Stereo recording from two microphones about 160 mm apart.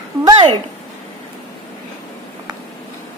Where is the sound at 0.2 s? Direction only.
25° right (ahead or behind).